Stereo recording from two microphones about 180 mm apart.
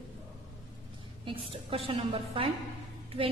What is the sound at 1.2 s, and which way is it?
A woman's voice, 30° right (ahead or behind).